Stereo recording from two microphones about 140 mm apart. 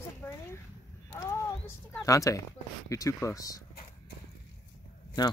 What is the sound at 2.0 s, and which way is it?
Speech, 25° left (ahead or behind).